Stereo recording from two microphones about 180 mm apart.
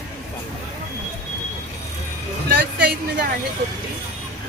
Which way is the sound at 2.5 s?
65° right (ahead or behind).